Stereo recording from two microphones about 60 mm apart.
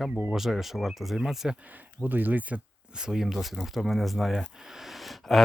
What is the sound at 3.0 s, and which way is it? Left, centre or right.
Speech, centre.